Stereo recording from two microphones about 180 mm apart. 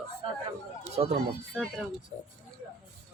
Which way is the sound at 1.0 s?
35° right (ahead or behind).